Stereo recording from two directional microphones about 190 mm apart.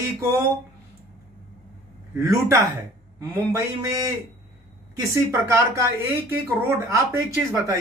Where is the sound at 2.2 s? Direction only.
15° right (ahead or behind).